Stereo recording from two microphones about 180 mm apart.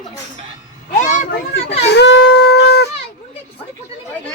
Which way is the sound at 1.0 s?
40° left (ahead or behind).